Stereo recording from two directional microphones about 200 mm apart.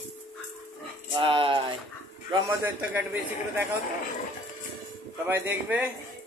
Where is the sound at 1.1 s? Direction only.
25° right (ahead or behind).